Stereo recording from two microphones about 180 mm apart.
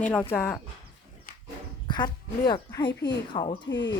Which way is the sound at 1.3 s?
60° left (ahead or behind).